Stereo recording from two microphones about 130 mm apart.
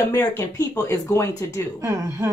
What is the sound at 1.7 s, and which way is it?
Speech, 20° right (ahead or behind).